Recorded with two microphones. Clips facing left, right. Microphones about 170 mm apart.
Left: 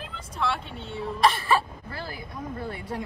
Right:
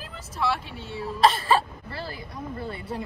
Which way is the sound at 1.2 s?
30° right (ahead or behind).